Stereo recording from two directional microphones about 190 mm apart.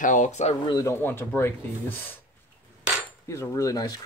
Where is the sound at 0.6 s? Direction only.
20° left (ahead or behind).